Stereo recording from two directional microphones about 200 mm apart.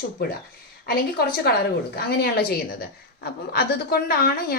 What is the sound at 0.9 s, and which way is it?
Speech, 50° left (ahead or behind).